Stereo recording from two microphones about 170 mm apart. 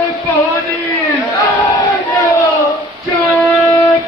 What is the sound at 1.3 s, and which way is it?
Crowd, 20° left (ahead or behind).